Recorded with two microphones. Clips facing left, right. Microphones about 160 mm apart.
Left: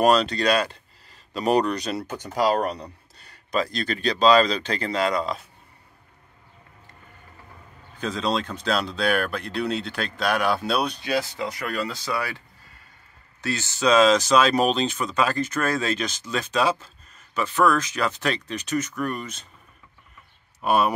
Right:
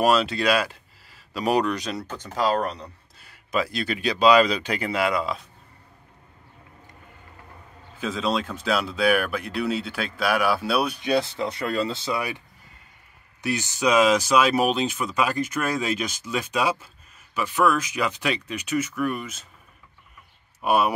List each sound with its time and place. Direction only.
0.0 s speech: 5° right (ahead or behind)
2.0 s speech: 10° left (ahead or behind)
3.2 s speech: 5° right (ahead or behind)
8.0 s speech: 5° right (ahead or behind)
11.0 s speech: 20° right (ahead or behind); by 19.4 s 5° right (ahead or behind)
20.6 s speech: 10° right (ahead or behind)